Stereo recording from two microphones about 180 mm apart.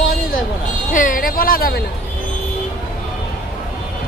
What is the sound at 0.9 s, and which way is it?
Speech, 50° left (ahead or behind).